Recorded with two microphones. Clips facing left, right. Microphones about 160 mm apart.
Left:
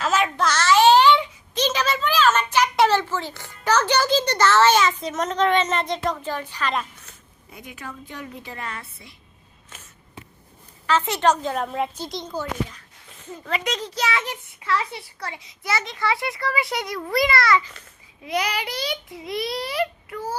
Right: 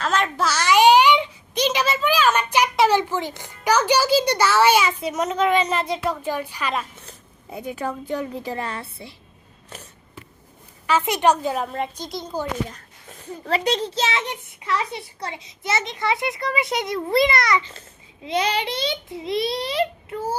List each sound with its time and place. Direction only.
0.0 s a child's voice: 5° left (ahead or behind)
0.4 s a sound: 10° right (ahead or behind)
2.9 s a child's voice: 15° right (ahead or behind)
7.8 s a woman's voice: 35° right (ahead or behind)
10.8 s a child's voice: 10° right (ahead or behind)
12.6 s a child's voice: 45° right (ahead or behind); by 20.3 s 25° right (ahead or behind)